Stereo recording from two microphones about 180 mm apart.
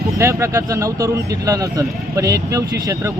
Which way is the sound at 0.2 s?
15° right (ahead or behind).